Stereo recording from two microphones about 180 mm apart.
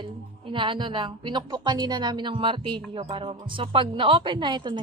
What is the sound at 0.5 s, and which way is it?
A woman's voice, 25° right (ahead or behind).